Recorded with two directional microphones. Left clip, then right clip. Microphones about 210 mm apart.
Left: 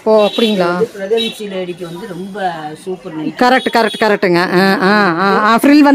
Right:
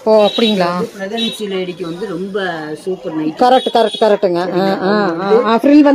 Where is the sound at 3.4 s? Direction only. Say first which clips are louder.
Right 1 dB; 75° left (ahead or behind).